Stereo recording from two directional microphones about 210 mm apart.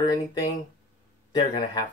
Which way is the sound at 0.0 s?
20° left (ahead or behind).